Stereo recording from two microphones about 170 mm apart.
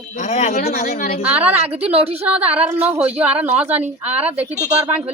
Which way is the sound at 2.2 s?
10° right (ahead or behind).